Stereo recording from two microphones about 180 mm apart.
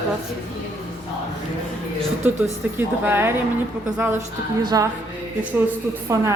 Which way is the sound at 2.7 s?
10° right (ahead or behind).